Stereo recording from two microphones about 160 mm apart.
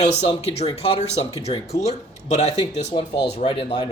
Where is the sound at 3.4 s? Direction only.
35° left (ahead or behind).